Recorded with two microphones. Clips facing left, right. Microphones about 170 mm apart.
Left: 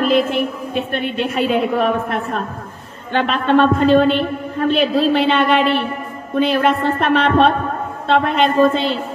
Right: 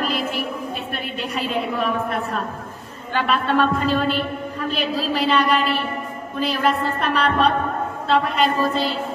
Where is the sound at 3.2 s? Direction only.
45° left (ahead or behind).